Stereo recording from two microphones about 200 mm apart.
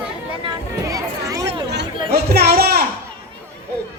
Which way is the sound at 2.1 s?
50° right (ahead or behind).